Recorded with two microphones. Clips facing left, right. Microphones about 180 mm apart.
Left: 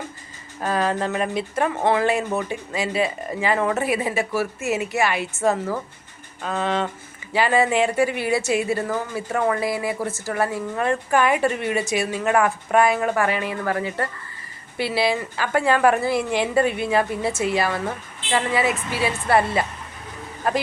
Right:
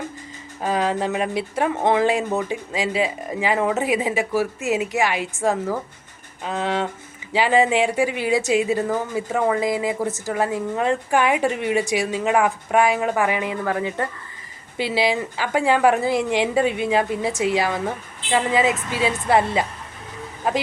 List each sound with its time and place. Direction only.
0.6 s speech: 15° right (ahead or behind)